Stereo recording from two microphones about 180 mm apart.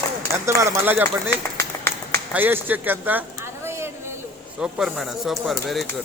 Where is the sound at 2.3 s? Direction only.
10° right (ahead or behind).